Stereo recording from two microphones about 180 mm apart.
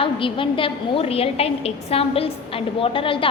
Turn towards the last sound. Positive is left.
turn(degrees=30)  # may be behind; listen again after turning